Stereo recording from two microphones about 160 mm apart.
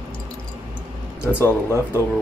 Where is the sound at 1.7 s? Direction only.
15° right (ahead or behind).